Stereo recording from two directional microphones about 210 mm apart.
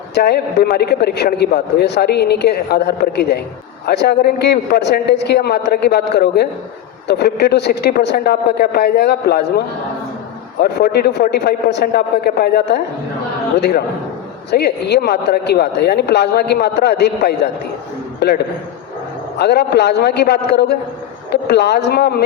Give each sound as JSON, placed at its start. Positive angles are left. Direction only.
{"t": 0.1, "sound": "a man's voice", "side_deg": 50}
{"t": 19.4, "sound": "a man's voice", "side_deg": 50}